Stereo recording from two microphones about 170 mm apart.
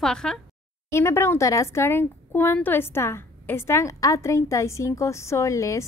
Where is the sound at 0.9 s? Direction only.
15° left (ahead or behind).